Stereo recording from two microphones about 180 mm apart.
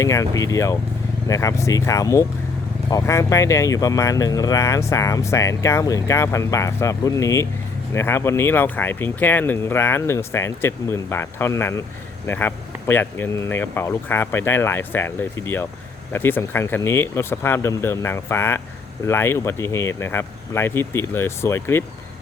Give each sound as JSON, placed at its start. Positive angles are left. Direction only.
{"t": 0.0, "sound": "speech", "side_deg": 20}